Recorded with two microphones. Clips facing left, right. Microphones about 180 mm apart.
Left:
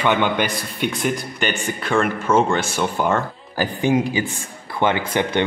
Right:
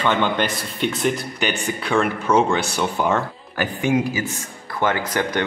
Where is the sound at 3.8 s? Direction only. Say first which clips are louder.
Left 2 dB; 30° left (ahead or behind).